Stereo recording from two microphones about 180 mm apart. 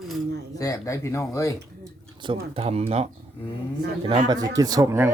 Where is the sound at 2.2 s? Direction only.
30° right (ahead or behind).